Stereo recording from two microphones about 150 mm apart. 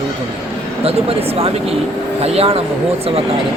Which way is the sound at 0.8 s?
40° right (ahead or behind).